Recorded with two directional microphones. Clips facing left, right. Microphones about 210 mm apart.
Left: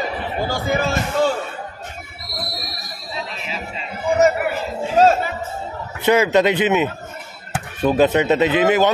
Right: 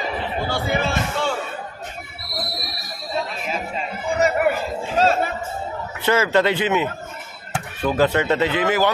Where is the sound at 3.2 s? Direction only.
50° right (ahead or behind).